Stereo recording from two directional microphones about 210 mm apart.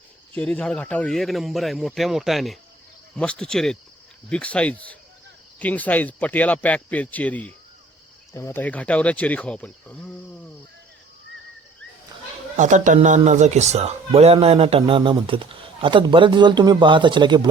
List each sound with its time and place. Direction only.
0.3 s a man's voice: 5° left (ahead or behind)
12.5 s speech: 35° right (ahead or behind)